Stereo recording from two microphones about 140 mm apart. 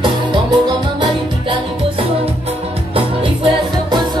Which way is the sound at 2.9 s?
40° right (ahead or behind).